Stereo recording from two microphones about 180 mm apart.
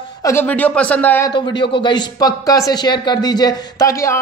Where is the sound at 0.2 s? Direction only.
15° left (ahead or behind).